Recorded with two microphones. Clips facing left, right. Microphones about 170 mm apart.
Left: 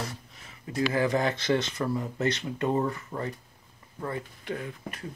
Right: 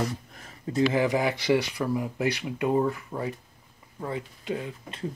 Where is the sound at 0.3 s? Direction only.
45° right (ahead or behind).